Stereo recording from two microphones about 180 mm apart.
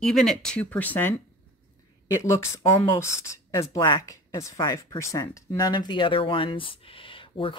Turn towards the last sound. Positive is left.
turn(degrees=30)  # may be behind; listen again after turning